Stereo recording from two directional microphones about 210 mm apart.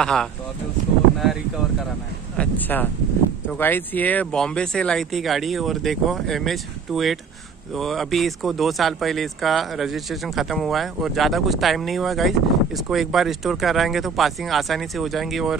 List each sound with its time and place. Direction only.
0.0 s speech: 5° left (ahead or behind)
2.3 s speech: 5° left (ahead or behind)